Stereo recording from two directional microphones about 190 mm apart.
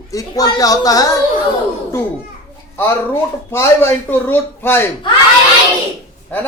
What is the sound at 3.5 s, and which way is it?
Speech, 15° left (ahead or behind).